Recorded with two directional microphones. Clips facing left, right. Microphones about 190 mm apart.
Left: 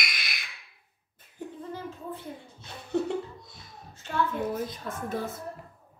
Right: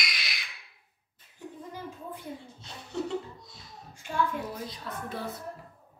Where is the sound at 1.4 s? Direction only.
50° left (ahead or behind).